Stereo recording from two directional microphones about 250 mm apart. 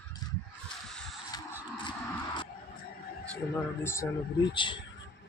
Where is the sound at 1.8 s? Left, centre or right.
Centre.